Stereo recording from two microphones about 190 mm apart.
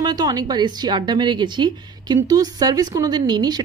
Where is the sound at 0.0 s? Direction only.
20° right (ahead or behind).